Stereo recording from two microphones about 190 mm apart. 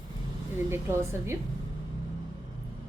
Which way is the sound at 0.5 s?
15° right (ahead or behind).